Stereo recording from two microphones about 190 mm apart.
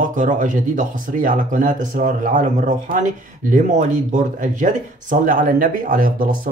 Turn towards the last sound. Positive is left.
turn(degrees=-45)  # may be behind; listen again after turning